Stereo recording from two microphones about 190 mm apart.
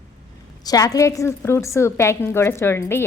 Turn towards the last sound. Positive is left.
turn(degrees=15)  # may be behind; listen again after turning